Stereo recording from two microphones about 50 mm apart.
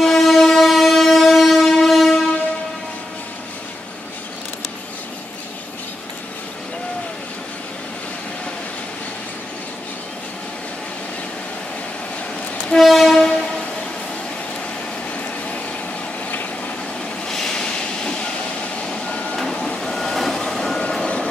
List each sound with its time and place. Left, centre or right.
0.0 s train: centre
12.7 s train: centre
17.3 s train: centre
19.5 s reversing beeps: centre
20.8 s vehicle: centre